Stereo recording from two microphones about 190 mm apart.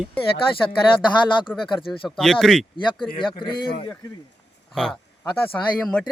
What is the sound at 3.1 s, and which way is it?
Speech, 25° left (ahead or behind).